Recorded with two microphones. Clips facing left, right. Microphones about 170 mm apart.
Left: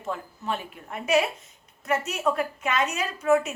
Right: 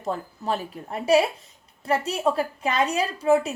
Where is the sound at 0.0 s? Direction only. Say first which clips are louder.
Right 4 dB; 35° right (ahead or behind).